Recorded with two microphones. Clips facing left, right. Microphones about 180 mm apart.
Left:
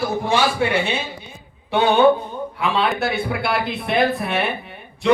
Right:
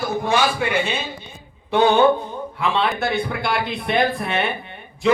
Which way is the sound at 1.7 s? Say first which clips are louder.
Even; centre (ahead or behind).